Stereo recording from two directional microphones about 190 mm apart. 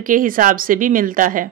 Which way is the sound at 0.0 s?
45° right (ahead or behind).